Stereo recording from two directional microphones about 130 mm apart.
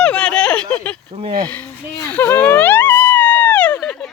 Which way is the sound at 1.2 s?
35° right (ahead or behind).